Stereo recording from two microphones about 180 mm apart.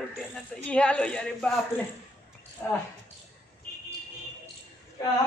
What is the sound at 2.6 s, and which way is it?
Speech, 10° left (ahead or behind).